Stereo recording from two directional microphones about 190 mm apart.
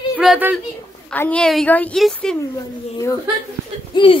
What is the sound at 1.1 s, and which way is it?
A woman's voice, 10° left (ahead or behind).